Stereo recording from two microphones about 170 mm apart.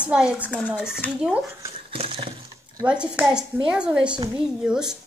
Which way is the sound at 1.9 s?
30° right (ahead or behind).